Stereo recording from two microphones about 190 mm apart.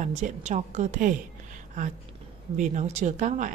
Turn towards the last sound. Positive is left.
turn(degrees=-40)  # may be behind; listen again after turning